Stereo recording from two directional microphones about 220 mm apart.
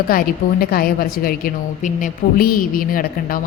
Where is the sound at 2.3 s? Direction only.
40° left (ahead or behind).